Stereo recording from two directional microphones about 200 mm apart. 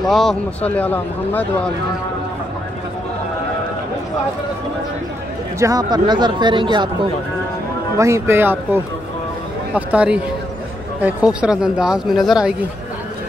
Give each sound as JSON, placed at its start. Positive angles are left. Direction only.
{"t": 0.0, "sound": "a man's voice", "side_deg": 0}
{"t": 5.6, "sound": "speech", "side_deg": -20}
{"t": 8.0, "sound": "speech", "side_deg": -15}